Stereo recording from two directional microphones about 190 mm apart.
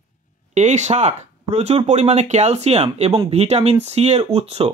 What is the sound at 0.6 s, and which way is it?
Speech, 40° right (ahead or behind).